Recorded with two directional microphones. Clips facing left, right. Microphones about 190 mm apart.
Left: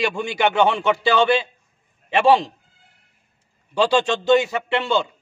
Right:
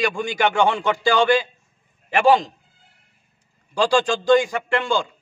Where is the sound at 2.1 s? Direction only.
30° left (ahead or behind).